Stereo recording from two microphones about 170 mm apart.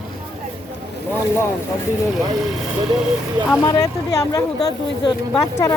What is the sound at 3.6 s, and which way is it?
Speech, 20° left (ahead or behind).